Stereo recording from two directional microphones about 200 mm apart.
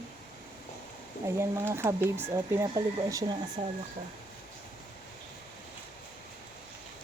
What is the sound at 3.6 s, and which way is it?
Speech, 30° right (ahead or behind).